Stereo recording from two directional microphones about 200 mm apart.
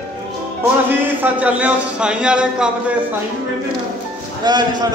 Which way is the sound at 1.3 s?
5° right (ahead or behind).